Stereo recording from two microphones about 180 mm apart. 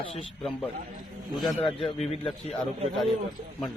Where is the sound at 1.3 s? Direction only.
Centre (ahead or behind).